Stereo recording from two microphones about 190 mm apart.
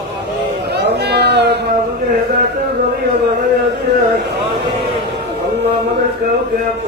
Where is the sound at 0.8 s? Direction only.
60° right (ahead or behind).